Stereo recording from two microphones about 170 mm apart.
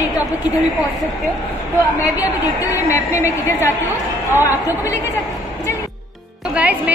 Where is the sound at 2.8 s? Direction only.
15° left (ahead or behind).